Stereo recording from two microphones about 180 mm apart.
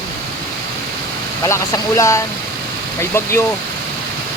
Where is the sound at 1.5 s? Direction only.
15° left (ahead or behind).